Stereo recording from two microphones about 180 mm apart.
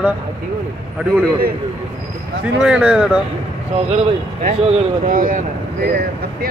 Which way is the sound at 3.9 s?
35° right (ahead or behind).